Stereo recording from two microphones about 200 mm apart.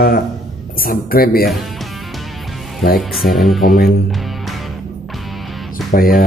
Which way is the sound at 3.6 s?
45° left (ahead or behind).